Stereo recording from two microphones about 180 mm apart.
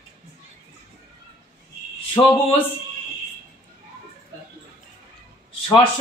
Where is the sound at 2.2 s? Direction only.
15° left (ahead or behind).